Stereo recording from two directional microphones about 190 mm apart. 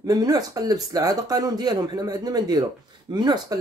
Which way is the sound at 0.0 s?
20° right (ahead or behind).